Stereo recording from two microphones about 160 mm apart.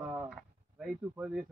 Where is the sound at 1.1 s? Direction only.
10° right (ahead or behind).